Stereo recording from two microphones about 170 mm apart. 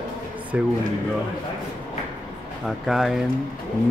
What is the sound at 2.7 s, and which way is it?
Speech, centre (ahead or behind).